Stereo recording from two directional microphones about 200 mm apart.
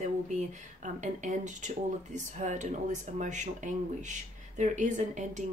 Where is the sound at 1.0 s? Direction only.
40° right (ahead or behind).